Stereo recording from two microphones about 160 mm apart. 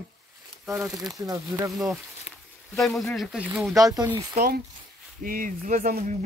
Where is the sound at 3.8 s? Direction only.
20° right (ahead or behind).